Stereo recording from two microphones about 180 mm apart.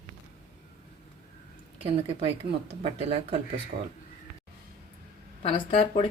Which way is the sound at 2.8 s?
35° right (ahead or behind).